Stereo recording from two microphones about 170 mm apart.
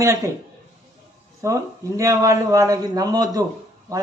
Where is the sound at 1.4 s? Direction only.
20° right (ahead or behind).